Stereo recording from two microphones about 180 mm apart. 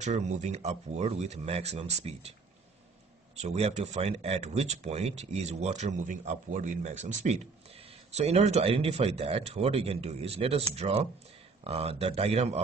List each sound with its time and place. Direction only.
0.0 s speech: 40° right (ahead or behind)
3.3 s speech: 35° right (ahead or behind)